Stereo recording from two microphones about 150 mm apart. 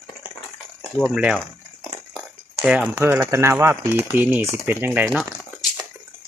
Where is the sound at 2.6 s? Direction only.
5° right (ahead or behind).